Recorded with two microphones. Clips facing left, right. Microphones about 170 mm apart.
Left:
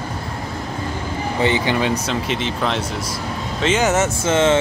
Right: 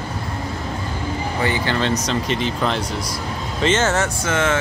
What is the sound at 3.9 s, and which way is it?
Speech, 20° left (ahead or behind).